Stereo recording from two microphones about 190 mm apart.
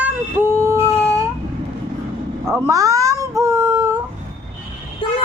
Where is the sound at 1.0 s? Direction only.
15° right (ahead or behind).